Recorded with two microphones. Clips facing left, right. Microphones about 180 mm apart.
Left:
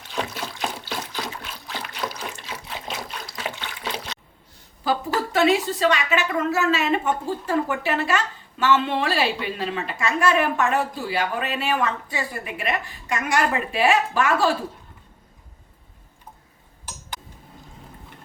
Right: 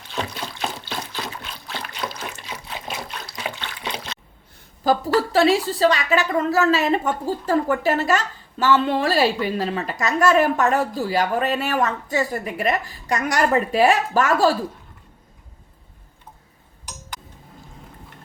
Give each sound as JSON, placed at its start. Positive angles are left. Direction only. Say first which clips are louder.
{"t": 0.1, "sound": "trickle", "louder": "even", "side_deg": 5}
{"t": 3.2, "sound": "water", "louder": "right 1 dB", "side_deg": 5}
{"t": 4.8, "sound": "a woman's voice", "louder": "right 5 dB", "side_deg": -40}